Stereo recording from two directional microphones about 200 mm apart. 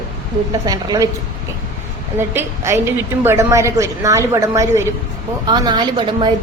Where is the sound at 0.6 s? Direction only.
20° right (ahead or behind).